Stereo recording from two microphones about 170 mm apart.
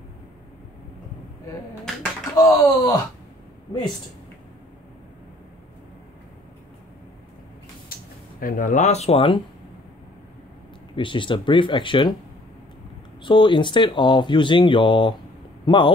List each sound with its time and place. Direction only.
2.3 s speech: 20° left (ahead or behind)
7.9 s speech: 55° left (ahead or behind); by 9.4 s 35° left (ahead or behind)
11.0 s speech: 30° left (ahead or behind)
13.2 s speech: 30° left (ahead or behind)